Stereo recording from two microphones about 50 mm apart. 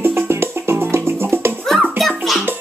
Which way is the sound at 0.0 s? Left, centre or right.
Right.